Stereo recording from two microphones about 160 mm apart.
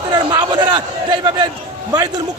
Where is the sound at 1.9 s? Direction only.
25° right (ahead or behind).